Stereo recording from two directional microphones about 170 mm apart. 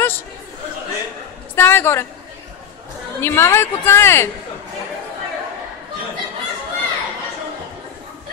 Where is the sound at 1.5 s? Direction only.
15° left (ahead or behind).